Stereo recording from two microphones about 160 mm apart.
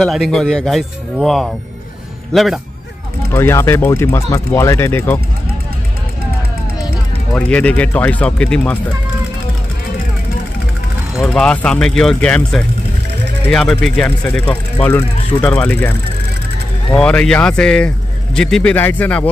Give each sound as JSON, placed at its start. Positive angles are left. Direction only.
{"t": 0.0, "sound": "speech", "side_deg": 0}
{"t": 3.3, "sound": "speech", "side_deg": 15}
{"t": 7.3, "sound": "speech", "side_deg": 10}
{"t": 11.1, "sound": "speech", "side_deg": 5}
{"t": 16.9, "sound": "speech", "side_deg": 5}